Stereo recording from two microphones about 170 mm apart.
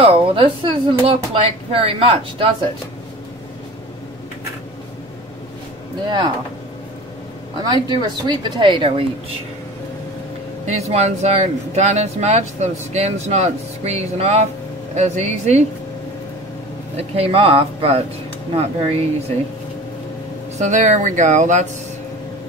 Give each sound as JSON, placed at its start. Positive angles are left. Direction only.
{"t": 0.0, "sound": "speech", "side_deg": -30}
{"t": 7.6, "sound": "speech", "side_deg": -25}
{"t": 10.7, "sound": "speech", "side_deg": -40}
{"t": 16.9, "sound": "speech", "side_deg": -35}
{"t": 20.5, "sound": "speech", "side_deg": -45}